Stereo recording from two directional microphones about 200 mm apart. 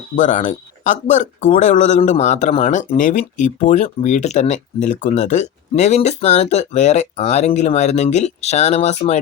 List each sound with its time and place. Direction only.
0.2 s speech: 40° left (ahead or behind)